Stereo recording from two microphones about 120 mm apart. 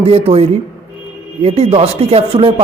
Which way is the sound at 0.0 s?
55° right (ahead or behind).